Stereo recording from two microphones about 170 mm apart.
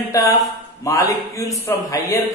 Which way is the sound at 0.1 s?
20° left (ahead or behind).